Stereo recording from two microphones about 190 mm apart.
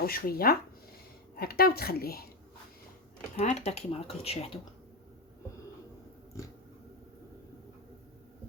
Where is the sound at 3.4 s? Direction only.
35° left (ahead or behind).